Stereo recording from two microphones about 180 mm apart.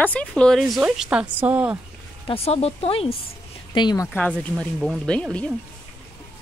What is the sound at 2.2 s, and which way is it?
Speech, 35° left (ahead or behind).